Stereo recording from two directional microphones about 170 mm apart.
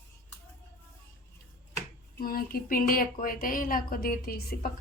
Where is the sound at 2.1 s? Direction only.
60° left (ahead or behind).